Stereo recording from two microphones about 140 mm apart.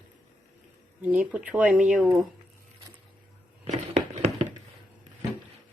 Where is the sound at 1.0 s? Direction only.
10° right (ahead or behind).